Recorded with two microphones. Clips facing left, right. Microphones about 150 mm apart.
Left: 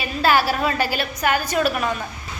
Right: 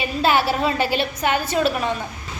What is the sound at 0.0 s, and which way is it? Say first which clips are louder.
A woman's voice: even; 20° right (ahead or behind).